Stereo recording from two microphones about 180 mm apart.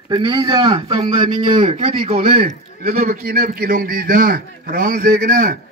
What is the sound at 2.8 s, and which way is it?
A man's voice, 55° right (ahead or behind).